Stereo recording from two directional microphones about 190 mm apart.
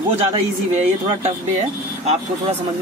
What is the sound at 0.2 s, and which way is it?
Speech, 35° right (ahead or behind).